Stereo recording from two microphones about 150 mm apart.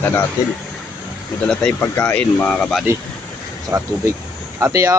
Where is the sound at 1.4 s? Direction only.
5° left (ahead or behind).